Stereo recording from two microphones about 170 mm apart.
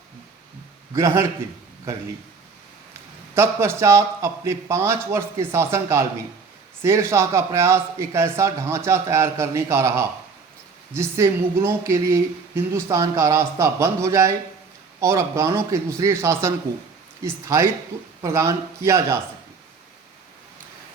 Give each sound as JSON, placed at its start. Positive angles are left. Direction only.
{"t": 0.9, "sound": "speech", "side_deg": -15}
{"t": 3.3, "sound": "speech", "side_deg": -15}